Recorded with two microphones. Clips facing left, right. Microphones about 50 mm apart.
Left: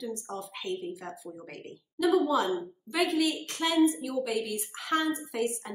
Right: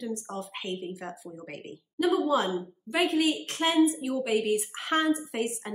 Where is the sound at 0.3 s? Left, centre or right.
Right.